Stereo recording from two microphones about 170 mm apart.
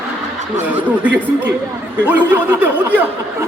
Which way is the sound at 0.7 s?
10° right (ahead or behind).